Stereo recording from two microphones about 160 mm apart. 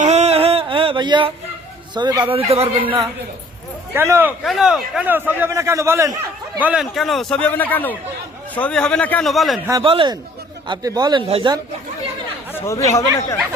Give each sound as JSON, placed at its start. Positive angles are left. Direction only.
{"t": 0.0, "sound": "a sound", "side_deg": -45}
{"t": 2.0, "sound": "speech", "side_deg": -25}
{"t": 3.9, "sound": "a man's voice", "side_deg": -15}
{"t": 4.4, "sound": "a man's voice", "side_deg": -5}
{"t": 6.6, "sound": "a man's voice", "side_deg": -5}
{"t": 9.8, "sound": "speech", "side_deg": -35}
{"t": 12.5, "sound": "speech", "side_deg": 20}